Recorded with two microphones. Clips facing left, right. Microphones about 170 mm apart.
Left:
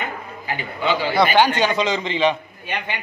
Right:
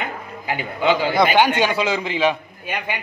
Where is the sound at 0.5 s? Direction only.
15° right (ahead or behind).